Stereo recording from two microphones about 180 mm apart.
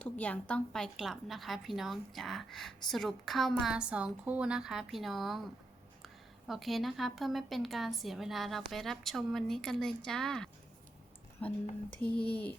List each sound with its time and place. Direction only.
0.0 s a woman's voice: 5° left (ahead or behind)
6.5 s a woman's voice: centre (ahead or behind)
11.4 s a sound: 10° left (ahead or behind)